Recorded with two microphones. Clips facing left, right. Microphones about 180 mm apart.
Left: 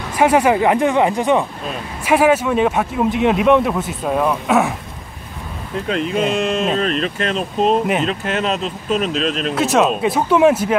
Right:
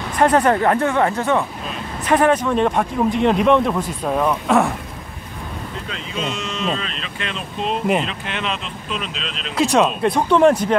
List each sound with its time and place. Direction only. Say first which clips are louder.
0.2 s speech: left 2 dB; 10° left (ahead or behind)
5.9 s speech: left 10 dB; 60° left (ahead or behind)
9.6 s speech: even; centre (ahead or behind)